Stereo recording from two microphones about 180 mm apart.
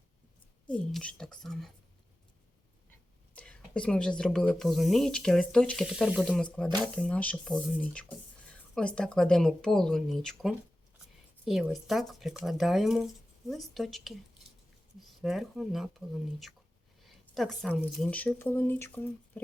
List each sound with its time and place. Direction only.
0.7 s speech: 5° left (ahead or behind)
3.3 s speech: 5° left (ahead or behind)
6.7 s speech: 20° right (ahead or behind)
6.9 s speech: 5° left (ahead or behind)